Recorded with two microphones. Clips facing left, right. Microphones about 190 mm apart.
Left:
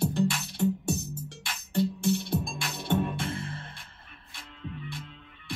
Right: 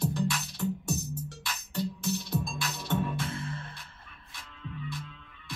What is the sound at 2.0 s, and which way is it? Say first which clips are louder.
Music: left 6 dB; 55° left (ahead or behind).